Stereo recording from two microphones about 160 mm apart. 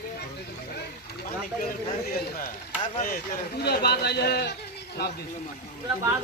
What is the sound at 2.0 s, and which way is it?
Speech, 65° left (ahead or behind).